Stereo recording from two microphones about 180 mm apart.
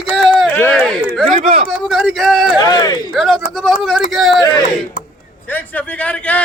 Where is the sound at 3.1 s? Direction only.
Centre (ahead or behind).